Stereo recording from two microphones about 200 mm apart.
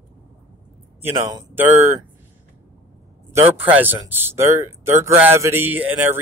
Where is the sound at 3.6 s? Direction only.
10° right (ahead or behind).